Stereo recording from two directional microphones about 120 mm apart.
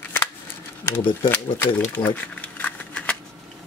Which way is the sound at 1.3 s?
15° left (ahead or behind).